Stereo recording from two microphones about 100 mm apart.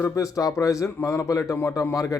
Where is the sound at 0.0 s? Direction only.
30° left (ahead or behind).